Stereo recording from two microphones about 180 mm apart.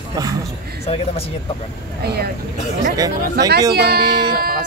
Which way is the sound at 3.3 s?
65° right (ahead or behind).